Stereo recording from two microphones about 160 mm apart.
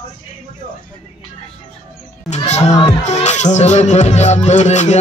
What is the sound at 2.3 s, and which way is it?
Speech, 45° left (ahead or behind).